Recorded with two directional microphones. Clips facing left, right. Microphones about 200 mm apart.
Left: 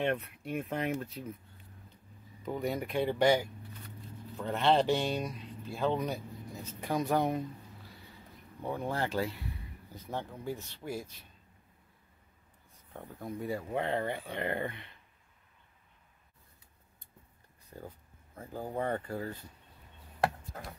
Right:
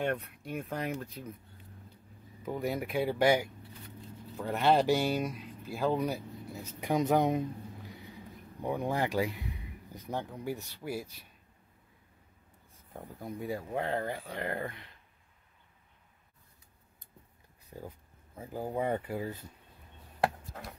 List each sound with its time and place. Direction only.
0.1 s speech: 5° left (ahead or behind)
2.4 s speech: centre (ahead or behind)
4.5 s speech: 10° right (ahead or behind)
6.8 s speech: 20° right (ahead or behind)
12.9 s speech: centre (ahead or behind)
17.7 s speech: 15° right (ahead or behind)